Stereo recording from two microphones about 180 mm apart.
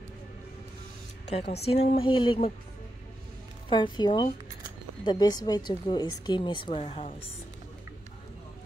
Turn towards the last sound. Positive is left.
turn(degrees=30)  # may be behind; listen again after turning